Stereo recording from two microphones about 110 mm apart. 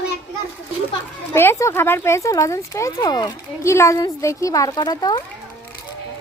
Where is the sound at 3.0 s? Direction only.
40° left (ahead or behind).